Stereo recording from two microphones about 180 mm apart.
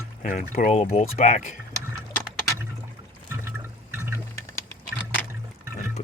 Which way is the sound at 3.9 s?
15° right (ahead or behind).